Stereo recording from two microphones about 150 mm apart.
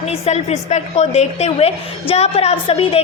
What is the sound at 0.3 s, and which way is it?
A woman's voice, 50° left (ahead or behind).